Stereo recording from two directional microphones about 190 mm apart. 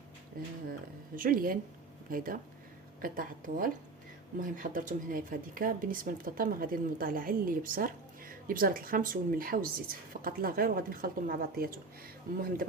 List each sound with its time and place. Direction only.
0.4 s speech: 50° right (ahead or behind)